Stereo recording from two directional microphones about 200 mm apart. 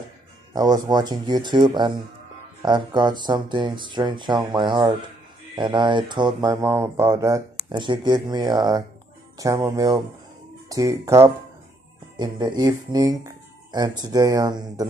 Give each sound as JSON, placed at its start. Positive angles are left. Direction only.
{"t": 0.5, "sound": "speech", "side_deg": -20}